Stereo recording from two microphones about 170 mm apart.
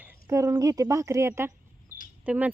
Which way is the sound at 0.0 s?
20° right (ahead or behind).